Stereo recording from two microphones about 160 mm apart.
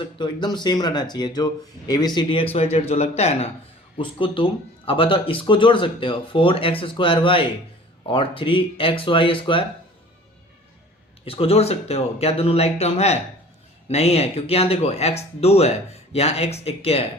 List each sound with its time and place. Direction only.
0.2 s speech: 25° left (ahead or behind)
11.3 s speech: 35° left (ahead or behind)